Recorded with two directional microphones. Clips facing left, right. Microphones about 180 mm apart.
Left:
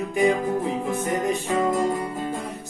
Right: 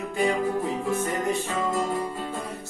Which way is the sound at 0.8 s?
15° left (ahead or behind).